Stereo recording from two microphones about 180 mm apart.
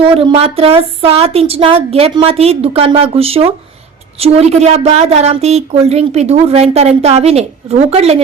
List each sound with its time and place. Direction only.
0.0 s a woman's voice: 30° right (ahead or behind)